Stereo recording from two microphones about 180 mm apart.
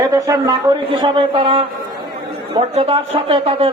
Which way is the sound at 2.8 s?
35° right (ahead or behind).